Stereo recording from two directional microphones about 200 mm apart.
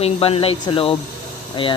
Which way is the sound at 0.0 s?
30° left (ahead or behind).